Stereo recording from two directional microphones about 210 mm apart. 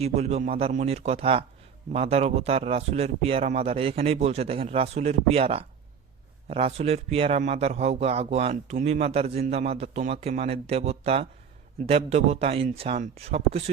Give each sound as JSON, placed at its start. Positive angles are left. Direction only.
{"t": 0.0, "sound": "speech", "side_deg": -30}